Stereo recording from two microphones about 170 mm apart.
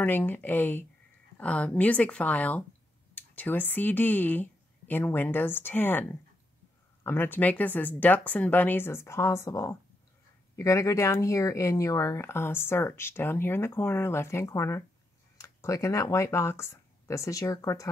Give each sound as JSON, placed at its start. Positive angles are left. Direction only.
{"t": 0.0, "sound": "speech", "side_deg": 10}